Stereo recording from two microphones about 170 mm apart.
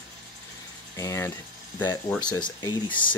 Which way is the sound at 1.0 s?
20° left (ahead or behind).